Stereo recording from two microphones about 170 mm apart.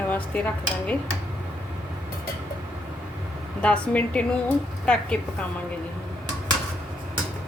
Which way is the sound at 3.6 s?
5° left (ahead or behind).